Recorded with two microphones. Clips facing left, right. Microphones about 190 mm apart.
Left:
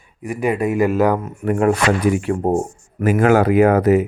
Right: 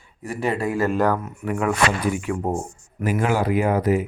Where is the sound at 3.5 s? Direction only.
70° left (ahead or behind).